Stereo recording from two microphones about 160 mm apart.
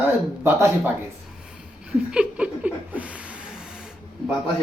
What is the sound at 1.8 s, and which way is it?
Laughter, 5° right (ahead or behind).